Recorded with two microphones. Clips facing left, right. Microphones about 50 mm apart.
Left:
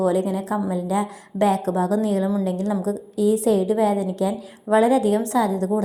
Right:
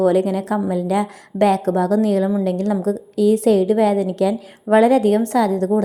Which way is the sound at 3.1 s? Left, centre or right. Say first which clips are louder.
Right 4 dB; right.